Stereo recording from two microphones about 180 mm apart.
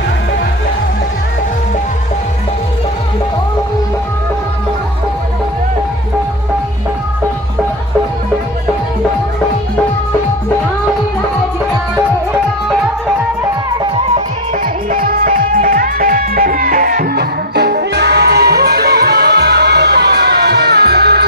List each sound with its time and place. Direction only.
14.9 s music: 50° right (ahead or behind)